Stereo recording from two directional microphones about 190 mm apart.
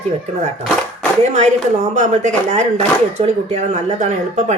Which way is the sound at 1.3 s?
40° right (ahead or behind).